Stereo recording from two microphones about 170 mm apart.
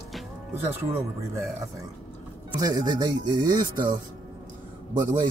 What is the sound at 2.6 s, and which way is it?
Speech, 25° right (ahead or behind).